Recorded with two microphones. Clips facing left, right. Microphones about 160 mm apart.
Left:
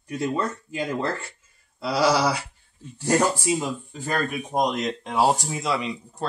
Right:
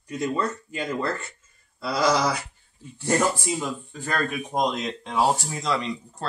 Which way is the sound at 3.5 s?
35° left (ahead or behind).